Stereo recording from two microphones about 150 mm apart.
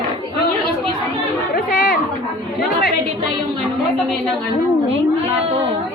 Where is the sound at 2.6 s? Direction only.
90° left.